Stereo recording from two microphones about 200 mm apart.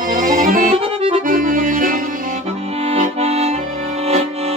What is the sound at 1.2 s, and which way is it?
Accordion, 40° right (ahead or behind).